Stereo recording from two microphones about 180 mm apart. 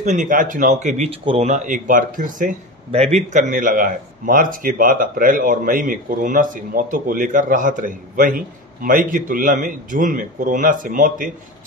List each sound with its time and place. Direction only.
0.0 s a man's voice: 45° right (ahead or behind)
2.9 s a man's voice: 35° right (ahead or behind)